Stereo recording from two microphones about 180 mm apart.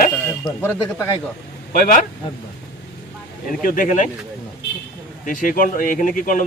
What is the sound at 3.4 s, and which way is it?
Speech, 50° left (ahead or behind).